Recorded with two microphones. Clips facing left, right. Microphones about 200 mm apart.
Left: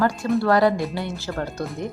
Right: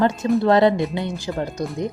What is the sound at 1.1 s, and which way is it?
Speech, 5° right (ahead or behind).